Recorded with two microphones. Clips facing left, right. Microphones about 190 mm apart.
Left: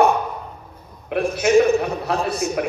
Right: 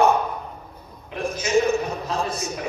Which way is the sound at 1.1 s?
60° left (ahead or behind).